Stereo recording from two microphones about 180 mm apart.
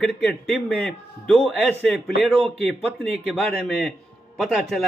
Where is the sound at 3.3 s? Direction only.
5° left (ahead or behind).